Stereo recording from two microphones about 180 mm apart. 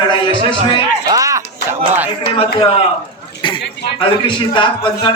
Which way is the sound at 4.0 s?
25° left (ahead or behind).